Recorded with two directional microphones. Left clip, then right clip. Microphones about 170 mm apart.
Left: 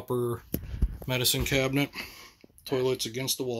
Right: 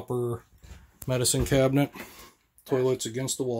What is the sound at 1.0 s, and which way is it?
Speech, 25° right (ahead or behind).